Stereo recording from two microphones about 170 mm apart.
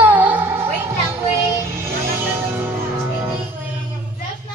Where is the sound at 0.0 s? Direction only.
10° right (ahead or behind).